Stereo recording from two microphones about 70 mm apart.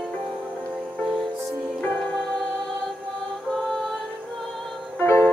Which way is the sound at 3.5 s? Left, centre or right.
Centre.